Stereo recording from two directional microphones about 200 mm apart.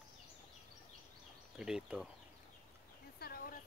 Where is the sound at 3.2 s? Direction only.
45° left (ahead or behind).